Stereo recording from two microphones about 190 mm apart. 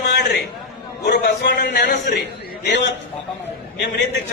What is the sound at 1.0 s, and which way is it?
A man's voice, 55° left (ahead or behind).